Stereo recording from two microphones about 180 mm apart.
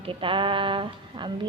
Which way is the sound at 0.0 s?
30° right (ahead or behind).